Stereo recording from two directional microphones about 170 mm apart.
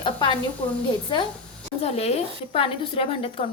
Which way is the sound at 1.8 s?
40° left (ahead or behind).